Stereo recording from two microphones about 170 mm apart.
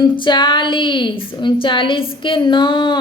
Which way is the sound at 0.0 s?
25° left (ahead or behind).